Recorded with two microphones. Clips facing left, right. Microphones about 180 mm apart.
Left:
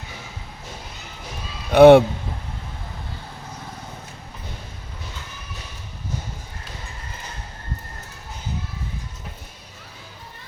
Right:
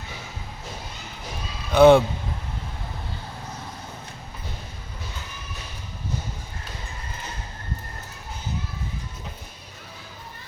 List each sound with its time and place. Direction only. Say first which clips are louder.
1.7 s a man's voice: left 4 dB; 60° left (ahead or behind)